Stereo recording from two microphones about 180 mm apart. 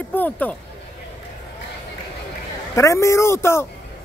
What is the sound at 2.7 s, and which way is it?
Speech, 15° left (ahead or behind).